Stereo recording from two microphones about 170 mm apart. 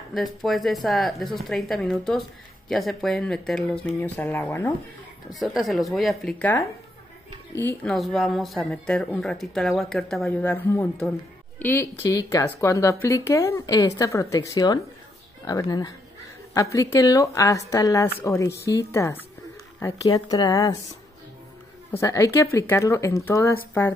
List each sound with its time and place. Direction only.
0.1 s speech: centre (ahead or behind)
5.3 s speech: centre (ahead or behind)
7.6 s speech: 5° left (ahead or behind); by 20.7 s 20° left (ahead or behind)
21.9 s speech: 20° left (ahead or behind)